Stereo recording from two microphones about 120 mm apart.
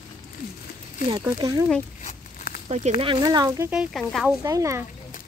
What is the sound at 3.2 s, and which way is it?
Speech, 30° right (ahead or behind).